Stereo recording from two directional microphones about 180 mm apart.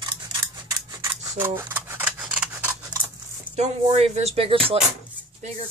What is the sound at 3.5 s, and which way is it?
Speech, 35° right (ahead or behind).